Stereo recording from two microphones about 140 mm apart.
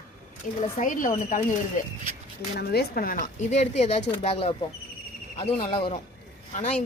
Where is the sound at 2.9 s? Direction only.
85° left.